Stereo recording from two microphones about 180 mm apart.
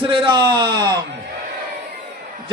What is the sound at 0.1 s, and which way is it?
Speech, 25° right (ahead or behind).